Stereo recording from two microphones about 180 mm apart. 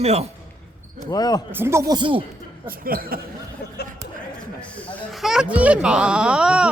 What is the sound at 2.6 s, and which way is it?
Speech, 55° right (ahead or behind).